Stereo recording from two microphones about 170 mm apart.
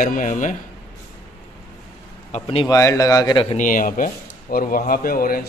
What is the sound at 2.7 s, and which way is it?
Speech, 20° left (ahead or behind).